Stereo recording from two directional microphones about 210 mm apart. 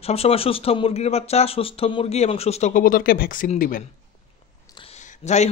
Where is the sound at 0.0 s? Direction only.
30° left (ahead or behind).